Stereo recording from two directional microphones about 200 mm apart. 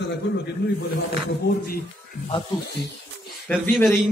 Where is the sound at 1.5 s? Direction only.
50° left (ahead or behind).